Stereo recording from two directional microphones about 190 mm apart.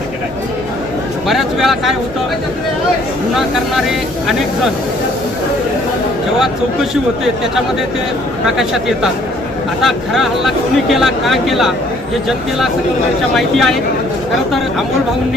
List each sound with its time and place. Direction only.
1.3 s speech: centre (ahead or behind)
3.3 s speech: centre (ahead or behind)
8.4 s speech: centre (ahead or behind)